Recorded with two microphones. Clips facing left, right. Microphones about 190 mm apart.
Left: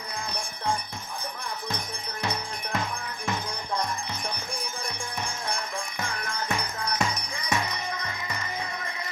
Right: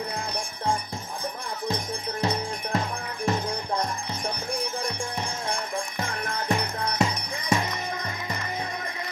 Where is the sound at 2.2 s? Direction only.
30° right (ahead or behind).